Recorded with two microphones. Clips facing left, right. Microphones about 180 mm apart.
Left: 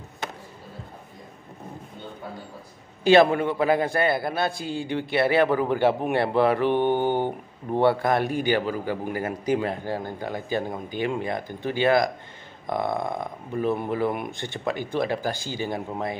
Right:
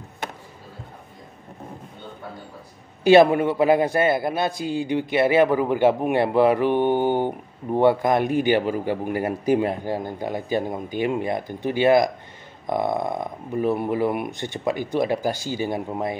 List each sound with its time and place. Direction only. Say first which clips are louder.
3.0 s a man's voice: right 3 dB; 20° right (ahead or behind)